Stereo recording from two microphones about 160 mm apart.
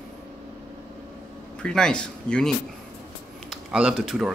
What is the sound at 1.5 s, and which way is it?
Speech, 5° left (ahead or behind).